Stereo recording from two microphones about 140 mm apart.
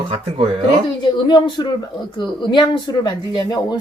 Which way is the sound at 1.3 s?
30° left (ahead or behind).